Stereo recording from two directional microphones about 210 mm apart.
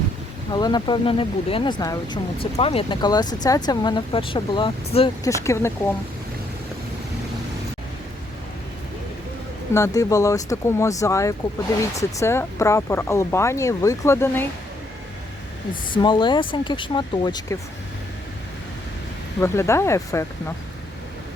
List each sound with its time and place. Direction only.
0.5 s speech: 20° left (ahead or behind)
5.2 s speech: 15° left (ahead or behind)
9.7 s speech: 15° left (ahead or behind)
15.9 s speech: 20° left (ahead or behind)
19.4 s speech: 10° left (ahead or behind)